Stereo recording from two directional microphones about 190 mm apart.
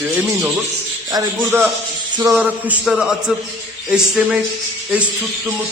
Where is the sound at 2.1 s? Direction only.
15° right (ahead or behind).